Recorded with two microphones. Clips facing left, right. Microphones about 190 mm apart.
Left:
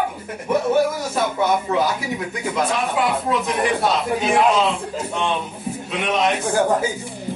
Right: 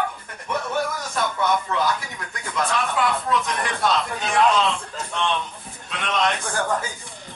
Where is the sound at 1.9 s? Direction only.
10° left (ahead or behind).